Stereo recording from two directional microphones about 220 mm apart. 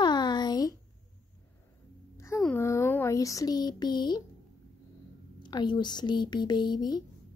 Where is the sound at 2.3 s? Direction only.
Centre (ahead or behind); by 4.2 s 20° left (ahead or behind).